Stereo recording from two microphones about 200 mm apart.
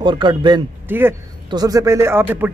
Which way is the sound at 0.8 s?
10° right (ahead or behind).